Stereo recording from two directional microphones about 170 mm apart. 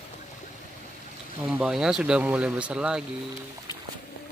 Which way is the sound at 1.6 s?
5° right (ahead or behind).